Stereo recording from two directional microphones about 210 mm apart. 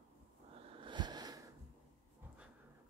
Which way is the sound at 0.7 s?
20° right (ahead or behind).